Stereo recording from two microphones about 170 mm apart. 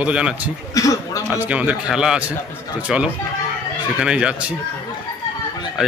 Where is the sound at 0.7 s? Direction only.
20° left (ahead or behind).